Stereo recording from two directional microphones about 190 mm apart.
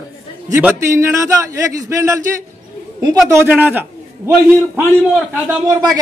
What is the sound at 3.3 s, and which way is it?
A man's voice, 10° right (ahead or behind).